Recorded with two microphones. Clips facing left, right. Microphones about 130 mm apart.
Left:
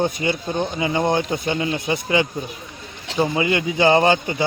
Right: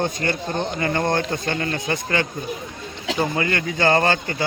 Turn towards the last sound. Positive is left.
turn(degrees=15)  # may be behind; listen again after turning